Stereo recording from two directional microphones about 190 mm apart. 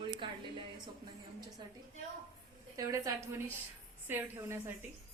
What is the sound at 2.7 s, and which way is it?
A woman's voice, 20° right (ahead or behind).